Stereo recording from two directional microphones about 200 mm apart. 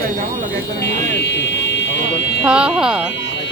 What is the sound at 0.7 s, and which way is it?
Speech, 60° left (ahead or behind).